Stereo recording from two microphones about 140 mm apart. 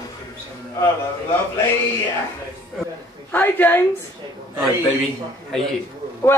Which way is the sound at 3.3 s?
15° left (ahead or behind).